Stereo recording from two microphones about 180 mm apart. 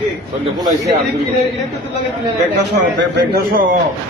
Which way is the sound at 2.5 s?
75° right (ahead or behind).